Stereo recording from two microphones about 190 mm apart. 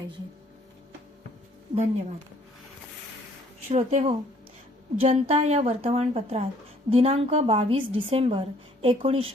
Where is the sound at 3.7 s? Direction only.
35° right (ahead or behind).